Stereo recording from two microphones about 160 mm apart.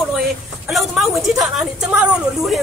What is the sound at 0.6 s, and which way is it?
A woman's voice, centre (ahead or behind).